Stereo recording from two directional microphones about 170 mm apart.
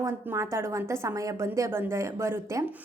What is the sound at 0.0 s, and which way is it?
A woman's voice, 15° right (ahead or behind).